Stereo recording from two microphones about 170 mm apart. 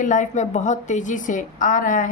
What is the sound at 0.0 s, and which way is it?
A woman's voice, 45° left (ahead or behind).